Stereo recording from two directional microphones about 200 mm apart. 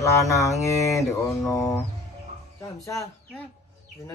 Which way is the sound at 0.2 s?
15° left (ahead or behind).